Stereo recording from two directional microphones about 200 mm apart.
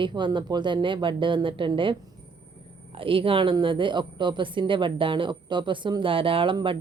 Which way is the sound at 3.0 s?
25° right (ahead or behind).